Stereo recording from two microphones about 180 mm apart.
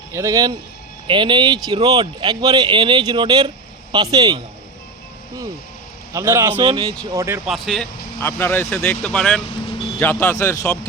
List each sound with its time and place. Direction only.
0.1 s a man's voice: 15° right (ahead or behind)
6.1 s a man's voice: 15° right (ahead or behind)
6.6 s a man's voice: 30° right (ahead or behind)
7.0 s a man's voice: 15° right (ahead or behind)
7.4 s speech: centre (ahead or behind)
9.6 s vehicle: 30° left (ahead or behind)
10.0 s speech: 10° left (ahead or behind)